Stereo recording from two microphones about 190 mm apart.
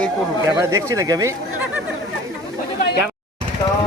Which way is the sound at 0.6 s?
15° right (ahead or behind).